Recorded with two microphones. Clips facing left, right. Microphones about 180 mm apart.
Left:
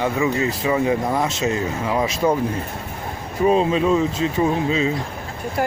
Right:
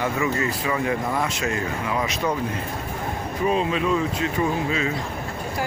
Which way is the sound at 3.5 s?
30° left (ahead or behind).